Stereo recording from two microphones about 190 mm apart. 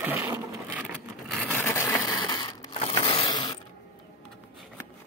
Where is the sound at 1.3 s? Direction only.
5° left (ahead or behind).